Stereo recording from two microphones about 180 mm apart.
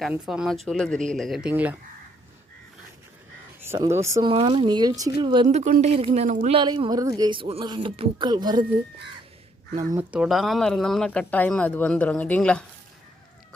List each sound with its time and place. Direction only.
0.0 s speech: 5° right (ahead or behind)
3.6 s speech: 15° right (ahead or behind)
4.3 s speech: 30° right (ahead or behind)
5.5 s speech: 40° right (ahead or behind)
6.2 s speech: 45° right (ahead or behind)
6.5 s speech: 25° right (ahead or behind)
10.0 s speech: 5° right (ahead or behind)